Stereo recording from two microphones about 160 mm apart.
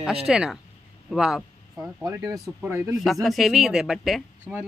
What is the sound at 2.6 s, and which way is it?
Speech, 10° right (ahead or behind).